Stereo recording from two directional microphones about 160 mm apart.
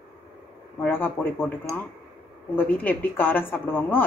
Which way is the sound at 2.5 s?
10° left (ahead or behind).